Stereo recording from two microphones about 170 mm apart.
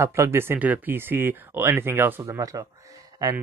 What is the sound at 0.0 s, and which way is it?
Speech, 15° right (ahead or behind).